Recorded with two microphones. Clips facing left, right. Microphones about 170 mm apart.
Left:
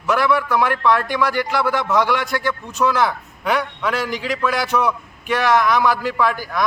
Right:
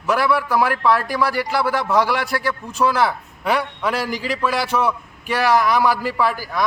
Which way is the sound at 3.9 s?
35° right (ahead or behind).